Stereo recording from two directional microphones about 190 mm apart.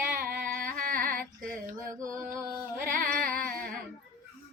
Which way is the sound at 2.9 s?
50° right (ahead or behind).